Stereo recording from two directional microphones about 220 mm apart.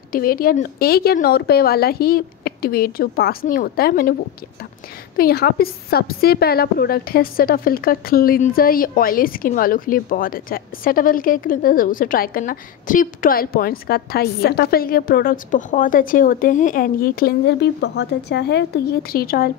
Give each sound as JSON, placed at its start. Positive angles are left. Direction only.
{"t": 0.1, "sound": "speech", "side_deg": 40}
{"t": 5.1, "sound": "a woman's voice", "side_deg": 45}